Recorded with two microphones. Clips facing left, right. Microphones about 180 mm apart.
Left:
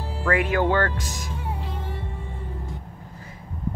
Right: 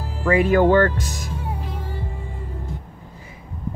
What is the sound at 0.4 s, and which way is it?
Speech, 45° right (ahead or behind).